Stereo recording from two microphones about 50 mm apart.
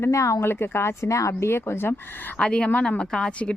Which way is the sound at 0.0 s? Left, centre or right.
Left.